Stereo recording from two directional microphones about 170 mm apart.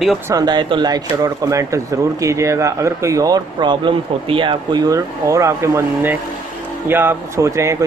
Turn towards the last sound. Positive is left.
turn(degrees=-15)  # may be behind; listen again after turning